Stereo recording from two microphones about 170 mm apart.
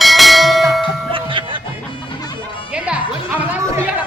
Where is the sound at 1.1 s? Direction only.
30° right (ahead or behind).